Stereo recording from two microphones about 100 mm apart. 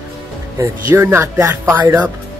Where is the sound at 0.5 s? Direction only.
25° right (ahead or behind).